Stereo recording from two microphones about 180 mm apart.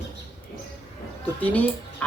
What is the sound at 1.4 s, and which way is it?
Speech, 10° left (ahead or behind).